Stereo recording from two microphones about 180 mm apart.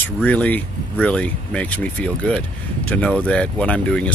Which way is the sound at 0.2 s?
10° left (ahead or behind).